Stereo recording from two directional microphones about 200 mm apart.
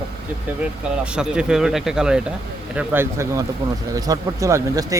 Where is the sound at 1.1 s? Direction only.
5° right (ahead or behind).